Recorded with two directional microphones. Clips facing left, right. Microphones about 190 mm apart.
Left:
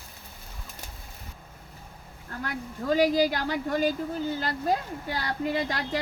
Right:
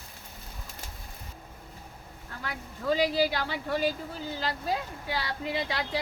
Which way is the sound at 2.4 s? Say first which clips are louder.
Left 1 dB; 45° left (ahead or behind).